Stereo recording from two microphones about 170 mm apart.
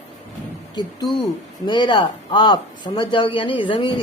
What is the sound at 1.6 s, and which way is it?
Speech, 25° left (ahead or behind).